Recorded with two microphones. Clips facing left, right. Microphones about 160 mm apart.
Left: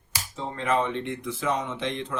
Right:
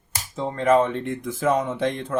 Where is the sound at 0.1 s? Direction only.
45° right (ahead or behind).